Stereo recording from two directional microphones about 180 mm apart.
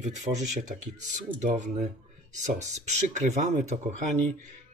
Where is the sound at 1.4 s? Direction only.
40° right (ahead or behind).